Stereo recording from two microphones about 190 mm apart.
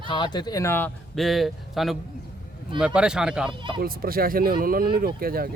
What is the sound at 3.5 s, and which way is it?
Speech, 25° right (ahead or behind).